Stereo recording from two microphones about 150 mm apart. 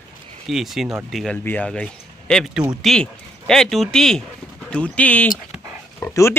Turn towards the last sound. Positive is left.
turn(degrees=15)  # may be behind; listen again after turning